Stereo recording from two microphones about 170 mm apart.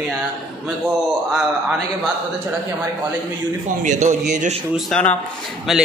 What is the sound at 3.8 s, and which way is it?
Speech, 45° right (ahead or behind).